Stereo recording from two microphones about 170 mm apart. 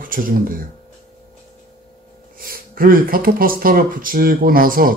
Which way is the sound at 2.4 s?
55° right (ahead or behind).